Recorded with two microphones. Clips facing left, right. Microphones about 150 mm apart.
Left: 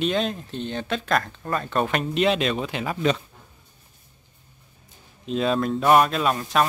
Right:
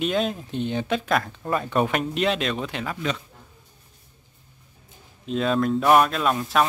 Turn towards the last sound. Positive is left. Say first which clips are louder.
# even
turn(degrees=0)  # may be behind; listen again after turning